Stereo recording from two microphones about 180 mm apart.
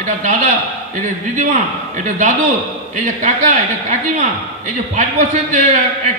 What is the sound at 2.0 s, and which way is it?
A man's voice, 45° right (ahead or behind).